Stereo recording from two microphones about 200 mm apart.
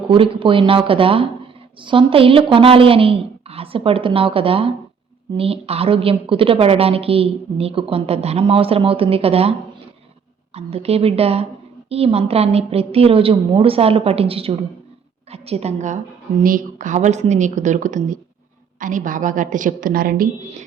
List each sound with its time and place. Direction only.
0.1 s a woman's voice: 25° right (ahead or behind)